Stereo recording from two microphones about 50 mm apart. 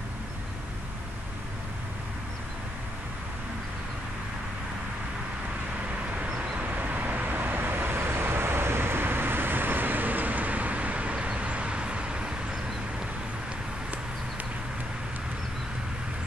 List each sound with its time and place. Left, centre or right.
6.5 s vehicle: right